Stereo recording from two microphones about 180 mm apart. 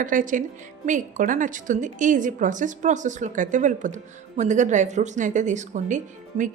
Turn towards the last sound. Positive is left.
turn(degrees=-45)  # may be behind; listen again after turning